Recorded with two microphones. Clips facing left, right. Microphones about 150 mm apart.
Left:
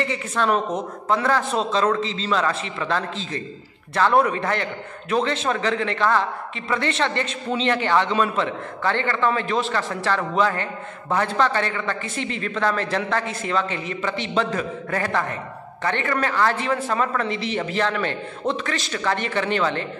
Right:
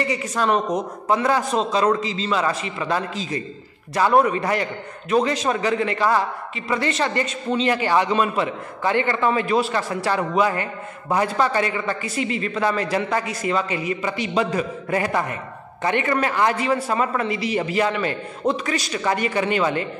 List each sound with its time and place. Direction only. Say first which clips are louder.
0.4 s a man's voice: right 1 dB; 10° right (ahead or behind)